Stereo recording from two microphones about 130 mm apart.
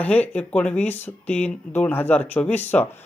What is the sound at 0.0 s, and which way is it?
Speech, 10° left (ahead or behind).